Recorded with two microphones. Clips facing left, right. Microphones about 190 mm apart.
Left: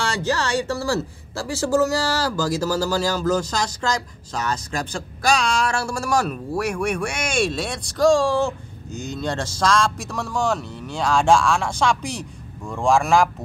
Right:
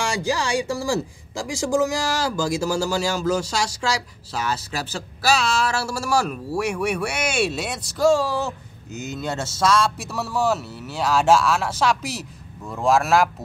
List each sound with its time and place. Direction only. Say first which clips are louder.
0.0 s speech: even; 10° right (ahead or behind)